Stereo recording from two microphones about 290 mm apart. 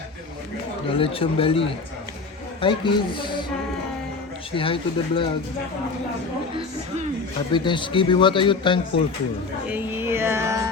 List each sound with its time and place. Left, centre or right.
0.9 s speech: centre
4.5 s speech: centre
7.5 s speech: centre
9.6 s music: centre